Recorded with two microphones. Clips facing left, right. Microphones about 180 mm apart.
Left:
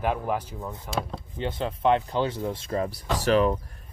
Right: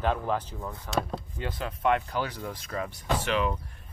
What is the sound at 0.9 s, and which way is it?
Speech, centre (ahead or behind).